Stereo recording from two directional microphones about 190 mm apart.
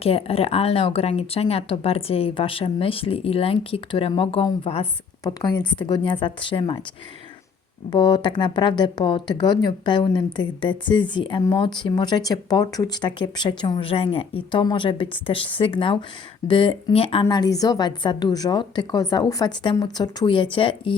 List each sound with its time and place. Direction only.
0.0 s speech: 30° left (ahead or behind)
7.9 s speech: 25° left (ahead or behind)